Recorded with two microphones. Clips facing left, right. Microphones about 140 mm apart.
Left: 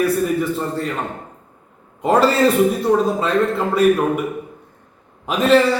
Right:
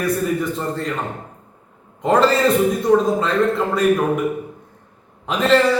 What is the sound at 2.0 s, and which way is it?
Speech, 5° left (ahead or behind).